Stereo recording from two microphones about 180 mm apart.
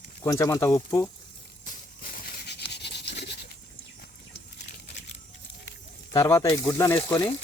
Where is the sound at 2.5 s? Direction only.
70° left (ahead or behind).